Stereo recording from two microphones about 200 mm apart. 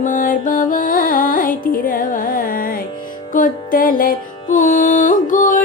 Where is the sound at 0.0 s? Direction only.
40° left (ahead or behind).